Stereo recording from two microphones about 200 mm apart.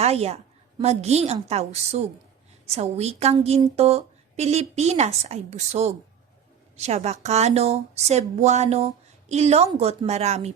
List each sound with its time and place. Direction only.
0.0 s speech: 30° right (ahead or behind)